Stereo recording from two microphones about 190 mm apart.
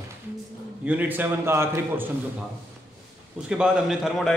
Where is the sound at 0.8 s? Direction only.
10° right (ahead or behind).